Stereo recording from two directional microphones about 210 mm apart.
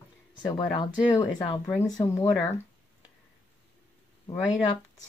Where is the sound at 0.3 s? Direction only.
20° left (ahead or behind).